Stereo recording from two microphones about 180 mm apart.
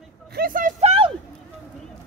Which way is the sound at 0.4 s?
50° right (ahead or behind).